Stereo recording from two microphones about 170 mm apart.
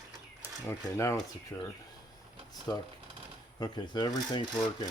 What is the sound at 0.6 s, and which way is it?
Speech, 15° left (ahead or behind).